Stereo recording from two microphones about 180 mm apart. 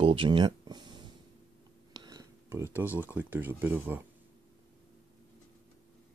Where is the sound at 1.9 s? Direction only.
20° right (ahead or behind).